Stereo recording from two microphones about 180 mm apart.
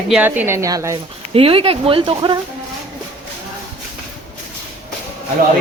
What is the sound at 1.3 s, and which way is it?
Speech, 30° right (ahead or behind).